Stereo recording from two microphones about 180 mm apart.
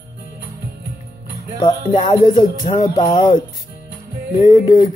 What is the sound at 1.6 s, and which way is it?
Speech, 25° left (ahead or behind).